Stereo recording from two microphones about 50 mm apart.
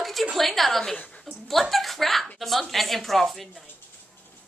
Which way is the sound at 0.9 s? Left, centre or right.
Left.